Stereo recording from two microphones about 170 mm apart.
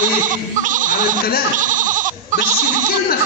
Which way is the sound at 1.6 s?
50° right (ahead or behind).